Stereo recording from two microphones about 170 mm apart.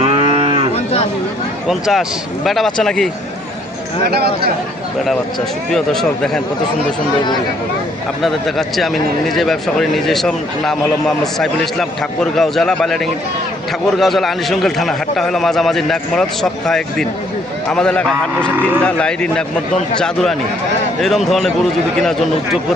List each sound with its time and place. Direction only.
0.0 s moo: 30° right (ahead or behind)
1.6 s a man's voice: centre (ahead or behind)
4.1 s speech: 70° right (ahead or behind)
5.7 s a man's voice: centre (ahead or behind)
8.2 s a man's voice: centre (ahead or behind)
21.0 s a man's voice: centre (ahead or behind)